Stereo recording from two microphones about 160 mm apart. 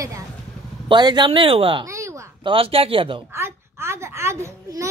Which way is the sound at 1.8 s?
20° right (ahead or behind).